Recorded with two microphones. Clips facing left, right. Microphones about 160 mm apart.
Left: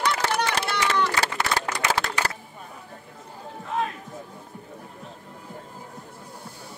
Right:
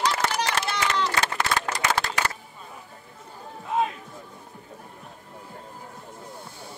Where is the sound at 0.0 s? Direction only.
60° left (ahead or behind).